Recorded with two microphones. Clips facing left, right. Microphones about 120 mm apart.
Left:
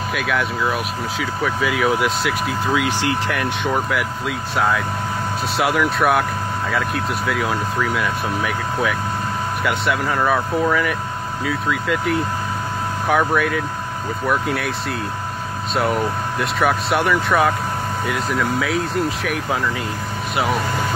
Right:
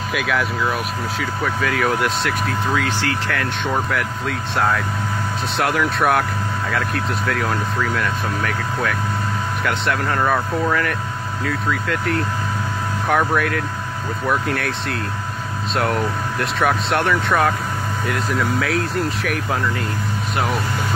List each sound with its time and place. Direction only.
0.1 s speech: centre (ahead or behind); by 3.7 s 15° left (ahead or behind)
3.7 s speech: 5° left (ahead or behind)